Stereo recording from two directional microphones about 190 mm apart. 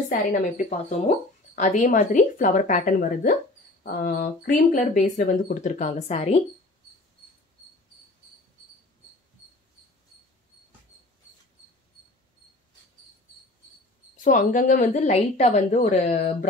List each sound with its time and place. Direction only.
0.1 s speech: 45° left (ahead or behind)
14.2 s speech: 45° left (ahead or behind)